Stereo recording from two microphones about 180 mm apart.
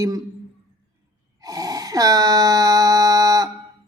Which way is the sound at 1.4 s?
20° right (ahead or behind).